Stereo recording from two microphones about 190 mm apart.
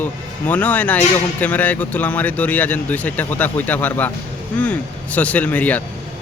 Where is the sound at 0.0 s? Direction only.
10° left (ahead or behind).